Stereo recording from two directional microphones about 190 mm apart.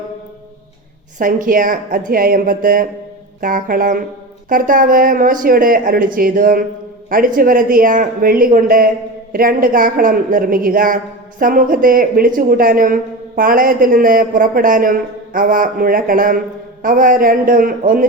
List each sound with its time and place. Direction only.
1.2 s a woman's voice: 45° right (ahead or behind)